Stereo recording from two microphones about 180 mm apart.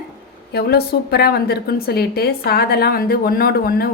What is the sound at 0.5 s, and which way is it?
A woman's voice, 60° left (ahead or behind).